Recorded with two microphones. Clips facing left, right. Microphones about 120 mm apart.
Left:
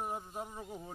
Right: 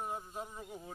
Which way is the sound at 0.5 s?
25° left (ahead or behind).